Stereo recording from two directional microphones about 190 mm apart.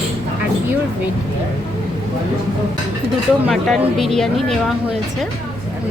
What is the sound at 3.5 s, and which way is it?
A woman's voice, centre (ahead or behind).